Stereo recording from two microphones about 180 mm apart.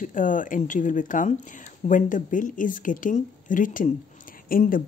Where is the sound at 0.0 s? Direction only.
45° left (ahead or behind).